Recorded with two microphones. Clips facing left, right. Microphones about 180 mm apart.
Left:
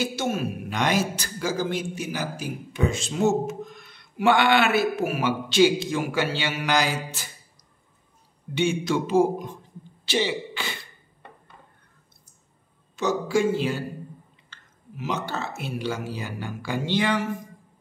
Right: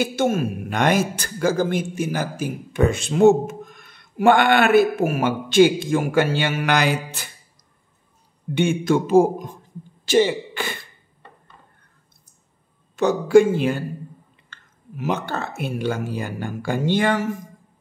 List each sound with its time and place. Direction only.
0.0 s a man's voice: 55° right (ahead or behind)
8.5 s a man's voice: 50° right (ahead or behind)
12.9 s a man's voice: 55° right (ahead or behind)